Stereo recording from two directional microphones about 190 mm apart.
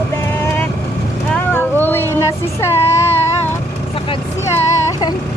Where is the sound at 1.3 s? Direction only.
10° left (ahead or behind).